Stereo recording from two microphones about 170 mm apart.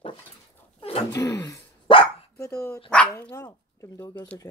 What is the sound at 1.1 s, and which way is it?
Speech, 20° left (ahead or behind).